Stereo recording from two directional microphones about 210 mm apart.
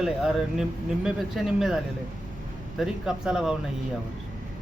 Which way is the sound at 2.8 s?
Centre (ahead or behind).